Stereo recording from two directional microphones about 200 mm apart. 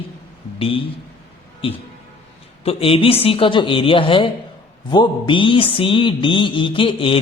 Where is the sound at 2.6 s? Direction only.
30° left (ahead or behind).